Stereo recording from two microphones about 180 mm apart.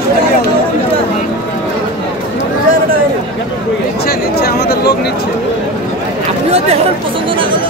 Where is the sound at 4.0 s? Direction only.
60° left (ahead or behind).